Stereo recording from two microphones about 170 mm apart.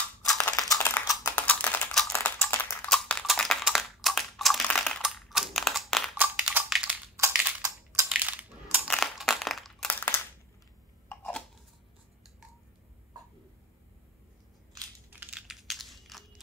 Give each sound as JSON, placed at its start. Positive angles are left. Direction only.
{"t": 0.4, "sound": "typing", "side_deg": 20}
{"t": 6.1, "sound": "crushing", "side_deg": -5}
{"t": 7.6, "sound": "crushing", "side_deg": -20}
{"t": 8.1, "sound": "crushing", "side_deg": -10}
{"t": 8.8, "sound": "a sound", "side_deg": 0}
{"t": 15.0, "sound": "computer keyboard", "side_deg": -10}